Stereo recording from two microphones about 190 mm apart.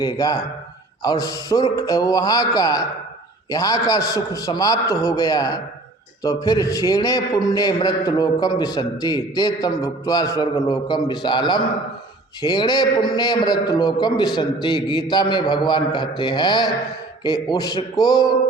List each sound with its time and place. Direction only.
0.0 s a man's voice: 20° left (ahead or behind)